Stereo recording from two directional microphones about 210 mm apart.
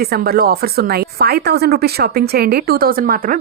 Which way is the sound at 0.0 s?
45° right (ahead or behind).